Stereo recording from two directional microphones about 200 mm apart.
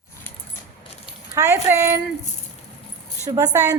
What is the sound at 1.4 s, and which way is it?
Speech, 10° right (ahead or behind).